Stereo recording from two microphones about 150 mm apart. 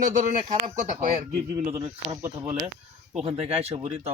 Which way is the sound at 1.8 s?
40° right (ahead or behind).